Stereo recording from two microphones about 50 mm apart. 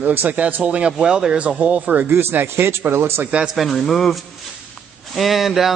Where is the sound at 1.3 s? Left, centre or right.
Right.